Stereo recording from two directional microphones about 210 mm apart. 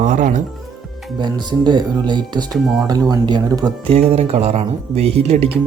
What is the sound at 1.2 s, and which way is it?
Speech, 20° right (ahead or behind).